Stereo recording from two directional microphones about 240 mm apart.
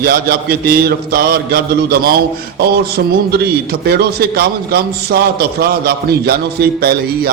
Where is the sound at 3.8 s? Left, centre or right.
Right.